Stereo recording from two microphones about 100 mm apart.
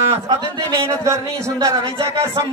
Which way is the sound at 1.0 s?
30° right (ahead or behind).